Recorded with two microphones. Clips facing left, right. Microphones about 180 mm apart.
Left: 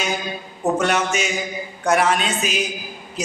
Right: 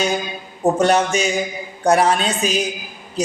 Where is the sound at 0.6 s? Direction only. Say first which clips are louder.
Right 4 dB; 35° right (ahead or behind).